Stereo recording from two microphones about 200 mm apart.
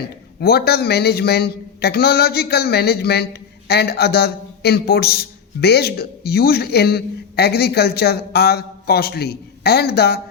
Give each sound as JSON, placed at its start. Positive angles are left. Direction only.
{"t": 0.3, "sound": "a man's voice", "side_deg": 50}